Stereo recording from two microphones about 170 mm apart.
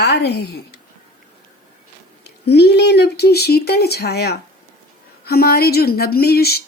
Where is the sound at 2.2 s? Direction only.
75° left (ahead or behind).